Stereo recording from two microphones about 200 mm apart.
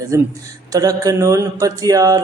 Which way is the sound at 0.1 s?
15° right (ahead or behind).